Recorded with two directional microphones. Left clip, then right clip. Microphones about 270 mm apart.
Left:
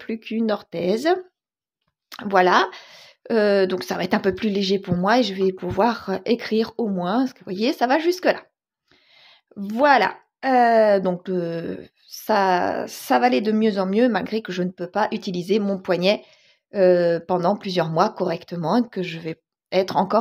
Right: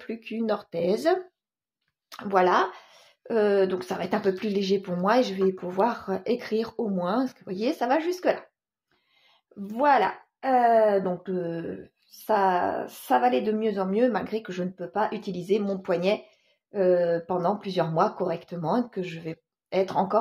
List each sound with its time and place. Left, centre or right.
0.0 s speech: left